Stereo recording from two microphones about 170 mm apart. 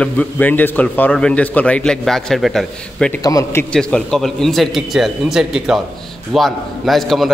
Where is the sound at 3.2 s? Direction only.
20° left (ahead or behind).